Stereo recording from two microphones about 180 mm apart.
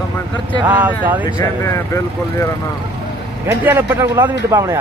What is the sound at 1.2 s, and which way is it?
Speech, 15° left (ahead or behind).